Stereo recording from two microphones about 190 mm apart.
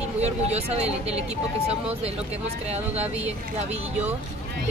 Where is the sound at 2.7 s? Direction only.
35° right (ahead or behind).